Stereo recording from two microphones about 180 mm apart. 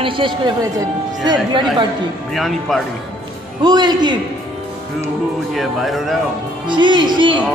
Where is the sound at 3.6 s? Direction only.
25° right (ahead or behind).